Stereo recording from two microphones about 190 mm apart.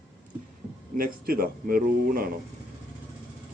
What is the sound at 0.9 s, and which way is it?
Speech, 50° right (ahead or behind).